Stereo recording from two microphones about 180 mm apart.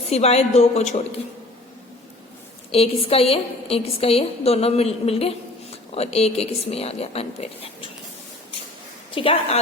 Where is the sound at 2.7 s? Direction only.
35° left (ahead or behind).